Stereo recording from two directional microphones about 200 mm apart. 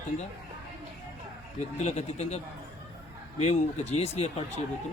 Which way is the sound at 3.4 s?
35° left (ahead or behind).